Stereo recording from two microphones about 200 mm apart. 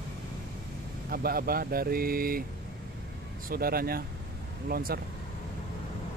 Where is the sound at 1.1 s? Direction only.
50° right (ahead or behind).